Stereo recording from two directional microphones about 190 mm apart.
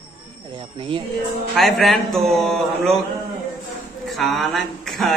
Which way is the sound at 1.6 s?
Centre (ahead or behind).